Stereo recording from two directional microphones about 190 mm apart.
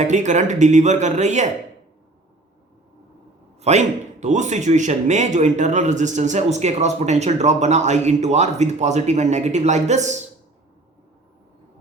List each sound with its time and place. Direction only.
0.0 s a man's voice: 40° right (ahead or behind)
3.6 s a man's voice: 35° right (ahead or behind)